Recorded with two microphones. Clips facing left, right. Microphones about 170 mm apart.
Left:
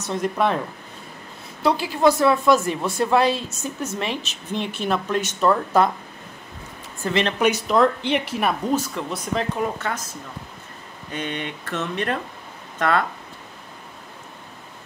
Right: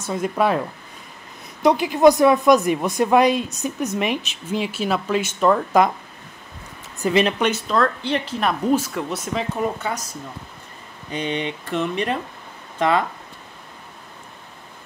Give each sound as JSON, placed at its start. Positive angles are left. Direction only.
{"t": 0.0, "sound": "speech", "side_deg": -5}
{"t": 1.6, "sound": "speech", "side_deg": -15}
{"t": 7.0, "sound": "speech", "side_deg": -15}
{"t": 7.3, "sound": "speech", "side_deg": 10}
{"t": 8.9, "sound": "speech", "side_deg": -5}
{"t": 11.1, "sound": "speech", "side_deg": 50}
{"t": 11.6, "sound": "speech", "side_deg": -10}